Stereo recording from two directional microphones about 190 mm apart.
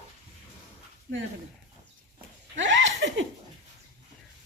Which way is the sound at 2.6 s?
75° right (ahead or behind).